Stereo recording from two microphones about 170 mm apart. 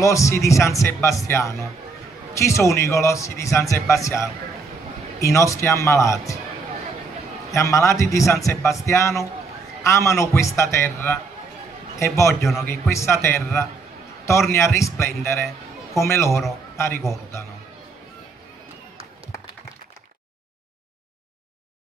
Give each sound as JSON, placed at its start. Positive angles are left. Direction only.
{"t": 0.0, "sound": "a man's voice", "side_deg": 20}
{"t": 5.2, "sound": "a man's voice", "side_deg": 20}
{"t": 7.5, "sound": "a man's voice", "side_deg": 15}